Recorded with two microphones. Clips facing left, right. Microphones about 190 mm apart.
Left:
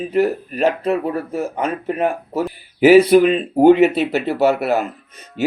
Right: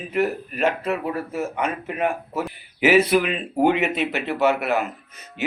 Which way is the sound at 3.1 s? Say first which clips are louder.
Left 9 dB; 30° left (ahead or behind).